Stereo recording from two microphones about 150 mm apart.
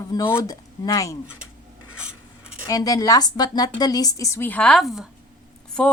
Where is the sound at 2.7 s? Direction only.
25° left (ahead or behind); by 5.1 s centre (ahead or behind).